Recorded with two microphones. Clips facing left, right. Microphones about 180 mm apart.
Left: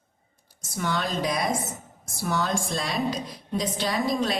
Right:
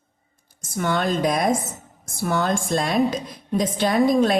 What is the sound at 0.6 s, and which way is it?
A woman's voice, 50° right (ahead or behind).